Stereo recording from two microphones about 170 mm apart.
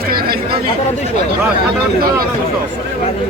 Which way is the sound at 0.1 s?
60° right (ahead or behind).